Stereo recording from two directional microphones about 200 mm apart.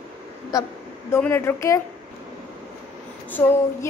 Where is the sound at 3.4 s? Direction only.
5° left (ahead or behind).